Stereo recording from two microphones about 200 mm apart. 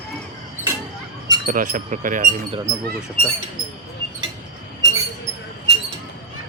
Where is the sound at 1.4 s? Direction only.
40° right (ahead or behind).